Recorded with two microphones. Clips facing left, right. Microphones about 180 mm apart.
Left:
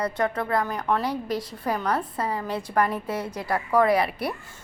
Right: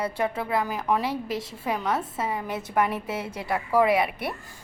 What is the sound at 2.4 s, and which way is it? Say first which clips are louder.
Speech: left 2 dB; 20° right (ahead or behind).